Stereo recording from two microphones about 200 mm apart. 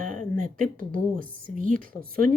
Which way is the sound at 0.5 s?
45° right (ahead or behind).